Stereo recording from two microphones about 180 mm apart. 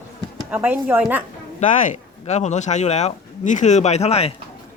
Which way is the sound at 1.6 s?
40° left (ahead or behind).